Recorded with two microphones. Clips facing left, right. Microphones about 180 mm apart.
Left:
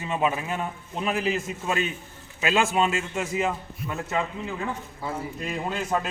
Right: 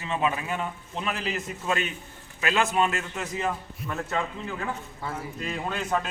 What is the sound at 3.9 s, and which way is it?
Speech, 5° left (ahead or behind).